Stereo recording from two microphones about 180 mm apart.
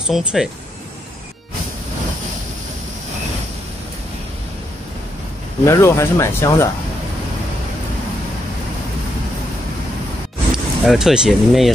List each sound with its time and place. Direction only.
0.0 s speech: 5° right (ahead or behind)
5.7 s speech: 15° left (ahead or behind)
10.5 s speech: centre (ahead or behind)